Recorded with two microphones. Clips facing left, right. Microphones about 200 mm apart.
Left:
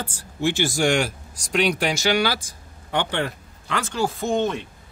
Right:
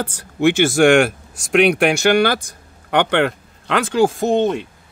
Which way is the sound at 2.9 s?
70° right (ahead or behind).